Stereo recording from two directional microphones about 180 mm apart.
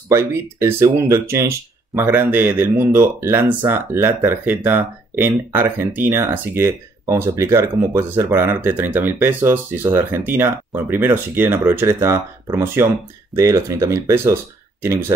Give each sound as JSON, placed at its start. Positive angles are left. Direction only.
{"t": 0.1, "sound": "speech", "side_deg": -15}